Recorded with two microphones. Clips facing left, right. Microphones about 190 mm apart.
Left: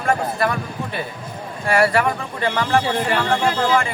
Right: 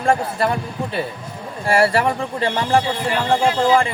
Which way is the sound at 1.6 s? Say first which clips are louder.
Right 1 dB; 30° right (ahead or behind).